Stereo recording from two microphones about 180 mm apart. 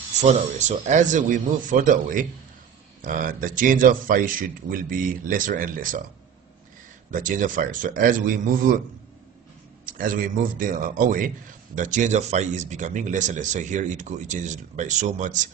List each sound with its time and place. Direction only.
0.2 s a man's voice: 40° right (ahead or behind)
7.1 s a man's voice: 45° right (ahead or behind)
9.8 s a man's voice: 50° right (ahead or behind)